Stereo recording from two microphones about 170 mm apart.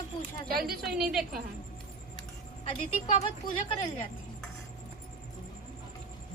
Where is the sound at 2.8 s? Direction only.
45° left (ahead or behind).